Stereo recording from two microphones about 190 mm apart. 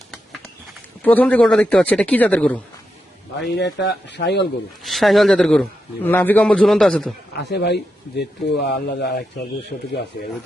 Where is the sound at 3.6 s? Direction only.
65° left (ahead or behind).